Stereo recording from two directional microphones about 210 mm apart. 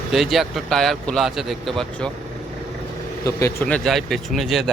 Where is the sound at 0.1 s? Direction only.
Centre (ahead or behind).